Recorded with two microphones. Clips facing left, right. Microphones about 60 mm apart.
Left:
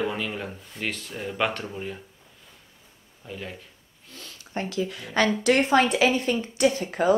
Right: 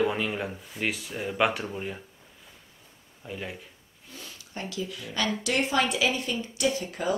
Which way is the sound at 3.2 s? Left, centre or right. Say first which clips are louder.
Even; centre.